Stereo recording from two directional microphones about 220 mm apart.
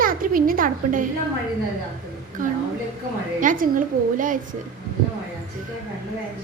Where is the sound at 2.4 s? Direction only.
35° right (ahead or behind).